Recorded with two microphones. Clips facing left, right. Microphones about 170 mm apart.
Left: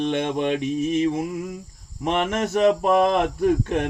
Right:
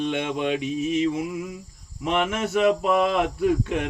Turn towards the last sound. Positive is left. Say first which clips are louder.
# left 2 dB
turn(degrees=45)  # may be behind; listen again after turning